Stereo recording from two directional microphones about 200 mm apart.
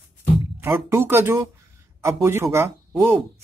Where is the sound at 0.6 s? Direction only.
10° right (ahead or behind).